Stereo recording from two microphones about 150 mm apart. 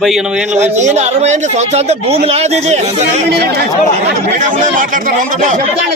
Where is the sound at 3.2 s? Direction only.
90° right.